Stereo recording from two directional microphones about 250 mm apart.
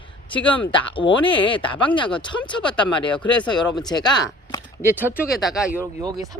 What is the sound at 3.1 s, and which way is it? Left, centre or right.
Speech, centre.